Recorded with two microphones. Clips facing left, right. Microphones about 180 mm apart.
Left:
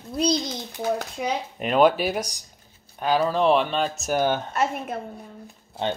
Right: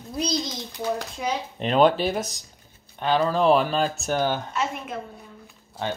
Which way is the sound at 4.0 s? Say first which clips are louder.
Left 2 dB; 15° left (ahead or behind).